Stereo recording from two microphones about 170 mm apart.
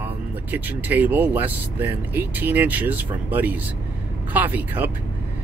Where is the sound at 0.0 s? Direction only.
10° right (ahead or behind).